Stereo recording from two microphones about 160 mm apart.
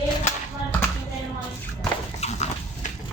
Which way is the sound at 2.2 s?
45° left (ahead or behind).